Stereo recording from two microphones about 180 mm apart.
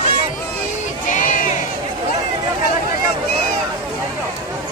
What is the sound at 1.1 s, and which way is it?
Crowd, 45° left (ahead or behind).